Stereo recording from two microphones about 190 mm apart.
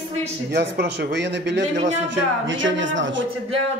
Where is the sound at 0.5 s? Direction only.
60° right (ahead or behind).